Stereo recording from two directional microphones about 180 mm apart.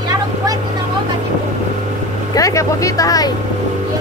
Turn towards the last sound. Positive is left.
turn(degrees=20)  # may be behind; listen again after turning